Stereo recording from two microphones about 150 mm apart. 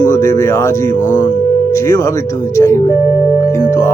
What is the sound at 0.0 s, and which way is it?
Speech, 20° left (ahead or behind).